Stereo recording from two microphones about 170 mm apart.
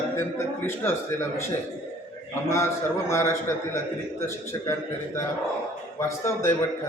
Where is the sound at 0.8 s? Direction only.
15° left (ahead or behind).